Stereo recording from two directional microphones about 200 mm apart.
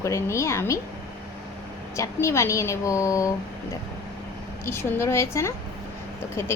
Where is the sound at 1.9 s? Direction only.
15° left (ahead or behind).